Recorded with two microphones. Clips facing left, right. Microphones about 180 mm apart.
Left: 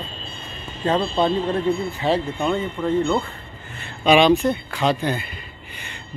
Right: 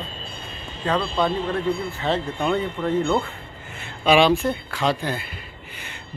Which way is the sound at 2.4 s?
Centre (ahead or behind).